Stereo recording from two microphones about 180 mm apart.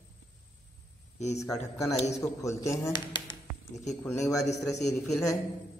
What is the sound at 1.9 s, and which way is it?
Speech, 40° left (ahead or behind).